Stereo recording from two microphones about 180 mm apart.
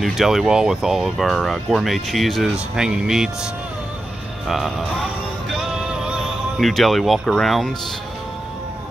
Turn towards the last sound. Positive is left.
turn(degrees=0)  # may be behind; listen again after turning